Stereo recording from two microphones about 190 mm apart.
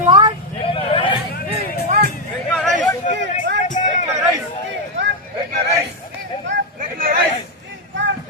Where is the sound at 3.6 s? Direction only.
40° left (ahead or behind).